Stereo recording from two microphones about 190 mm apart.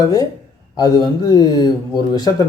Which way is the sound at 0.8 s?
20° left (ahead or behind).